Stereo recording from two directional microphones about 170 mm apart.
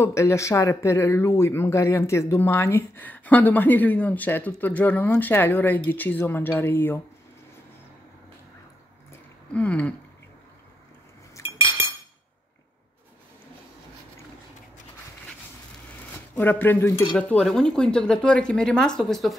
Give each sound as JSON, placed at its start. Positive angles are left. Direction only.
{"t": 0.0, "sound": "speech", "side_deg": 15}
{"t": 9.1, "sound": "a sound", "side_deg": 10}
{"t": 11.4, "sound": "cutlery", "side_deg": 20}
{"t": 16.3, "sound": "speech", "side_deg": 10}